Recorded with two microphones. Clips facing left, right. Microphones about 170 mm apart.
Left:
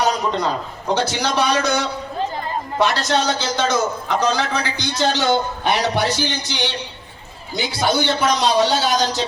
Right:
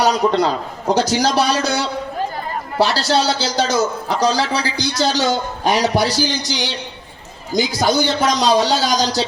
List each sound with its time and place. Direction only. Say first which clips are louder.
0.0 s a man's voice: right 4 dB; 35° right (ahead or behind)